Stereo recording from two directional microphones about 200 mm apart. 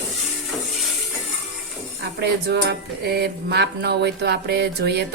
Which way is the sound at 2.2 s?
55° right (ahead or behind).